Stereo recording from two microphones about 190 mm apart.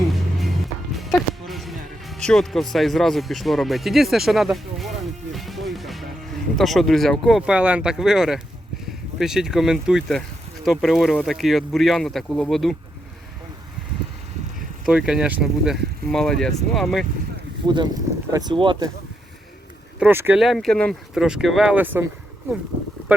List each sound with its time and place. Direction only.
0.1 s music: centre (ahead or behind)
6.6 s speech: centre (ahead or behind)
14.8 s speech: 5° right (ahead or behind)
17.7 s speech: 20° right (ahead or behind)
20.0 s speech: 10° right (ahead or behind)
20.4 s speech: centre (ahead or behind)